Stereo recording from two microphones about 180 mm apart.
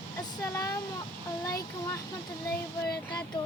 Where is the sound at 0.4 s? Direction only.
15° left (ahead or behind).